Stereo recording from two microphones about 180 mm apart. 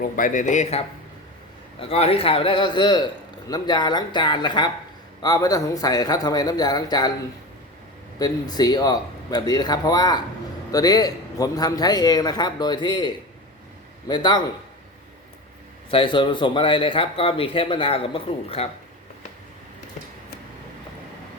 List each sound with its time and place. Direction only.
0.0 s a man's voice: 45° left (ahead or behind); by 7.1 s 20° left (ahead or behind)
8.2 s a man's voice: 20° left (ahead or behind)
15.9 s a man's voice: 30° left (ahead or behind)